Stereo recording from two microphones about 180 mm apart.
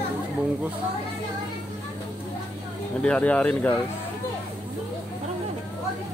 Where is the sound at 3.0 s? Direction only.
5° left (ahead or behind).